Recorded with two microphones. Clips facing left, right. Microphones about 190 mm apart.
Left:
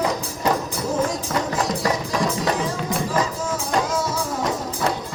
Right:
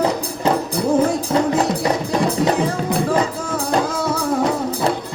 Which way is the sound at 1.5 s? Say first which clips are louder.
Right 4 dB; 60° right (ahead or behind).